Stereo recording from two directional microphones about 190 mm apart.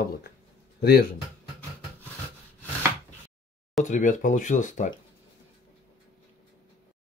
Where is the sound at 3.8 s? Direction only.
40° left (ahead or behind).